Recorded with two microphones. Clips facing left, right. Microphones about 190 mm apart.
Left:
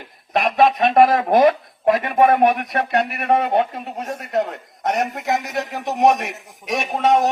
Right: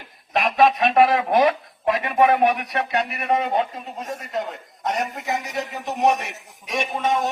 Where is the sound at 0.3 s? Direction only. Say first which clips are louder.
Left 2 dB; 45° left (ahead or behind).